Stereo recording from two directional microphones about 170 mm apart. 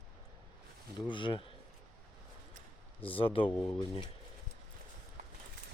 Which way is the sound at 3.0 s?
30° left (ahead or behind).